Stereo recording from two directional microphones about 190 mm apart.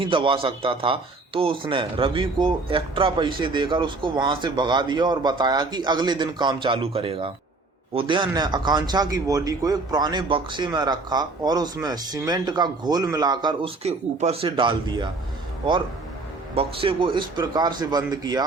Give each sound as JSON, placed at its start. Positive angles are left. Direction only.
{"t": 0.0, "sound": "speech", "side_deg": -25}
{"t": 16.6, "sound": "speech", "side_deg": -25}